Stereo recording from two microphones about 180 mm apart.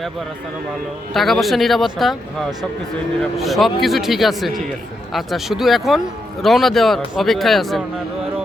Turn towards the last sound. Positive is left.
turn(degrees=0)  # may be behind; listen again after turning